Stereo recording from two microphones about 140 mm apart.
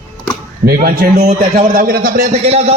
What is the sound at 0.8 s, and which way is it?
Speech, 75° right (ahead or behind).